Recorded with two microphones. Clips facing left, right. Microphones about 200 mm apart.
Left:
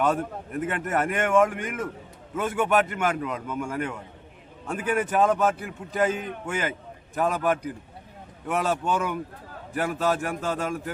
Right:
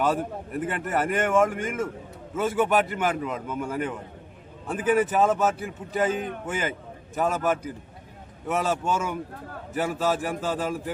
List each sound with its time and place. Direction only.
0.0 s a man's voice: centre (ahead or behind)
4.9 s a man's voice: centre (ahead or behind)
6.1 s a man's voice: 50° right (ahead or behind)
6.4 s a man's voice: centre (ahead or behind)